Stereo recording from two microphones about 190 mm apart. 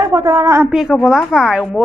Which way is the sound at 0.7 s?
5° right (ahead or behind).